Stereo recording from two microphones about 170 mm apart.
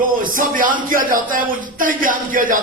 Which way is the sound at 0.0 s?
55° right (ahead or behind).